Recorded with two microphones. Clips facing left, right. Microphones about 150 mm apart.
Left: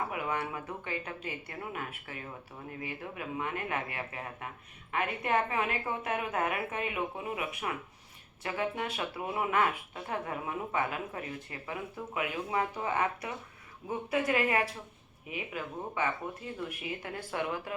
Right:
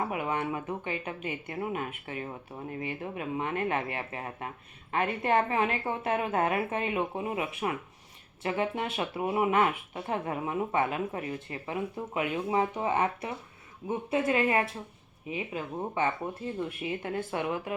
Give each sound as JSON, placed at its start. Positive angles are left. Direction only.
{"t": 0.1, "sound": "speech", "side_deg": -25}